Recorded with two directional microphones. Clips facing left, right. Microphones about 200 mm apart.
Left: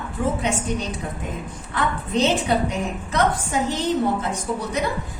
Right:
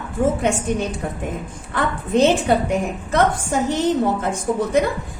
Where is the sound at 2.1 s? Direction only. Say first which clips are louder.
Right 5 dB; 50° right (ahead or behind).